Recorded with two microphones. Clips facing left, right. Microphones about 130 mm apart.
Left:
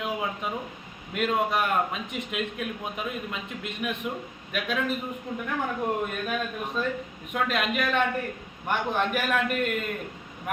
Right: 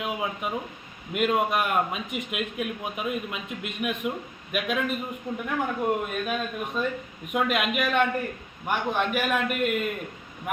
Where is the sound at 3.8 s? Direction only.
15° right (ahead or behind).